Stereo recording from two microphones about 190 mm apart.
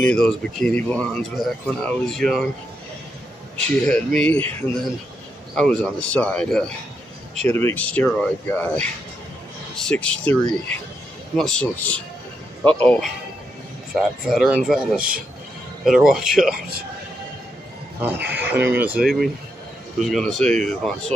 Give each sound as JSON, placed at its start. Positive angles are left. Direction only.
{"t": 0.0, "sound": "speech", "side_deg": 5}
{"t": 3.8, "sound": "speech", "side_deg": 5}
{"t": 18.3, "sound": "speech", "side_deg": -10}